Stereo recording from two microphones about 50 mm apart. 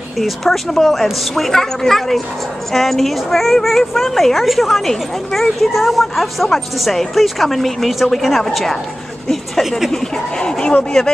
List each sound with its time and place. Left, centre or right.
0.2 s a woman's voice: centre